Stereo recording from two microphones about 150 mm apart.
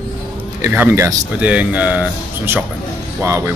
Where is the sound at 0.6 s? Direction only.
15° right (ahead or behind).